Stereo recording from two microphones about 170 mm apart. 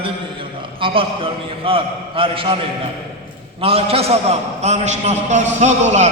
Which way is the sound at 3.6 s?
35° right (ahead or behind).